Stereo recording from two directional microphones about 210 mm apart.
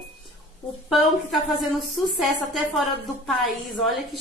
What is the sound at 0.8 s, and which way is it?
A woman's voice, centre (ahead or behind).